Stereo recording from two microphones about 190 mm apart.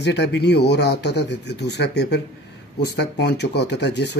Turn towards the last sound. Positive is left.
turn(degrees=65)  # may be behind; listen again after turning